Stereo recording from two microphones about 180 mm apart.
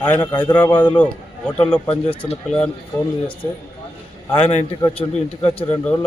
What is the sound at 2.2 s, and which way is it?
Speech, 35° left (ahead or behind).